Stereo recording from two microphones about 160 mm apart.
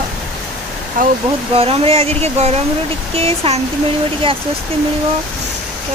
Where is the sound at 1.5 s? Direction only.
35° right (ahead or behind).